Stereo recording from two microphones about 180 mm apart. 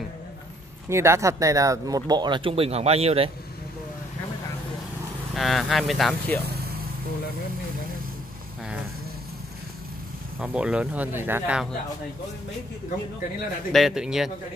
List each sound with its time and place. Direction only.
0.8 s speech: 15° right (ahead or behind); by 3.3 s 35° right (ahead or behind)
5.3 s speech: centre (ahead or behind)
10.4 s speech: 5° right (ahead or behind)
13.7 s speech: centre (ahead or behind)